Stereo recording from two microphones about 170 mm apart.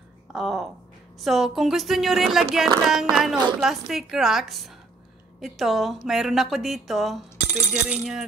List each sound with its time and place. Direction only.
0.3 s a woman's voice: centre (ahead or behind)